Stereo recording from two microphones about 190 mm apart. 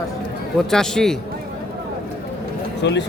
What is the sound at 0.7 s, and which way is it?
Speech, 5° left (ahead or behind).